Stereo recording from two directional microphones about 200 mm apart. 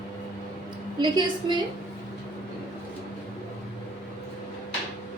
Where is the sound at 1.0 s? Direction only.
20° right (ahead or behind).